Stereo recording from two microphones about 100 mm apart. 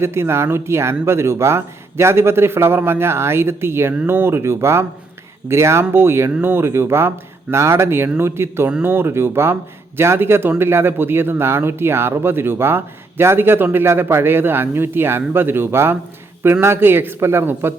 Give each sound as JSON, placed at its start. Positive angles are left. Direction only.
{"t": 0.0, "sound": "speech", "side_deg": -25}